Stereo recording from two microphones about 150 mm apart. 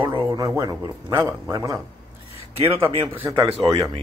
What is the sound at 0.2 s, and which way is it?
Speech, 20° right (ahead or behind).